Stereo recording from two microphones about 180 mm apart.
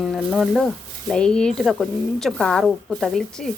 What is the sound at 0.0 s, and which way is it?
Speech, centre (ahead or behind).